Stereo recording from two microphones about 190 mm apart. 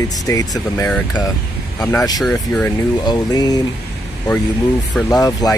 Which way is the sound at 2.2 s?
5° left (ahead or behind).